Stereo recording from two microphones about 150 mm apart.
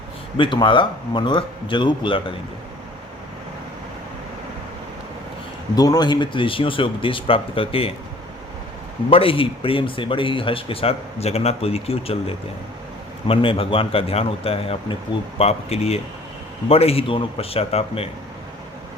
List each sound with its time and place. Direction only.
0.3 s speech: 35° left (ahead or behind)
5.7 s speech: 25° left (ahead or behind)
9.0 s speech: 40° left (ahead or behind)
13.2 s speech: 35° left (ahead or behind)